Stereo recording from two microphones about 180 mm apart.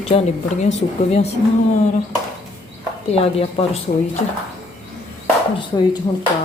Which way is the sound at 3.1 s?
30° left (ahead or behind).